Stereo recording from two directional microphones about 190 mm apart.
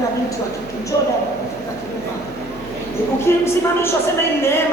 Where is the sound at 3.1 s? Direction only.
15° left (ahead or behind).